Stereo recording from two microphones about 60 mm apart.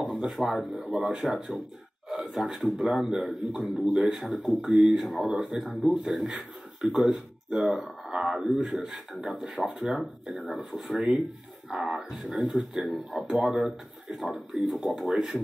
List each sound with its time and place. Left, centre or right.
0.1 s a man's voice: centre
2.0 s a man's voice: centre
9.6 s speech: right
9.8 s a man's voice: centre
11.7 s a man's voice: centre